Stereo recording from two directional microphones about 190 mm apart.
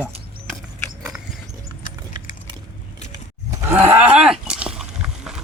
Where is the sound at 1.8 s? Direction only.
45° left (ahead or behind).